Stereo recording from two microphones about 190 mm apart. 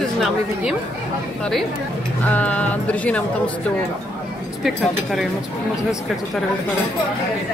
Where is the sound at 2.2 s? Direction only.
10° left (ahead or behind).